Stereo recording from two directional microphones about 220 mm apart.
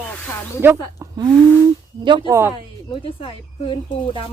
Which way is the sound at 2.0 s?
20° right (ahead or behind).